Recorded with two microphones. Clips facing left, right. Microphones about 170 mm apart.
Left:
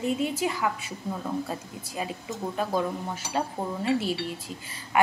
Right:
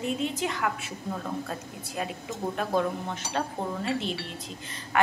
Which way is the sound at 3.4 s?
10° left (ahead or behind).